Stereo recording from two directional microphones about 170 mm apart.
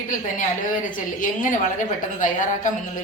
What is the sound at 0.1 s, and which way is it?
A woman's voice, 50° left (ahead or behind).